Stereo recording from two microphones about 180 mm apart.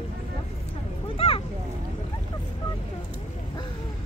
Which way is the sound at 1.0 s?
30° left (ahead or behind).